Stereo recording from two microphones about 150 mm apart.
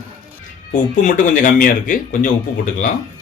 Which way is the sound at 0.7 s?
60° left (ahead or behind).